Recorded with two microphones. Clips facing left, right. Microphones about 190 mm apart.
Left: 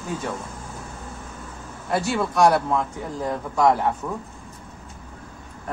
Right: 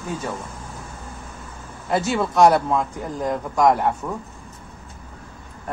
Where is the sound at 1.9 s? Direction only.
20° right (ahead or behind).